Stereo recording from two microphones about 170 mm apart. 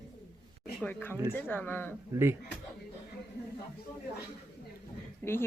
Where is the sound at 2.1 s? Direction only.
15° right (ahead or behind).